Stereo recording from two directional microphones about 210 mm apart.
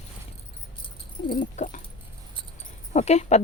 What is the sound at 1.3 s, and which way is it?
Dog, 40° left (ahead or behind).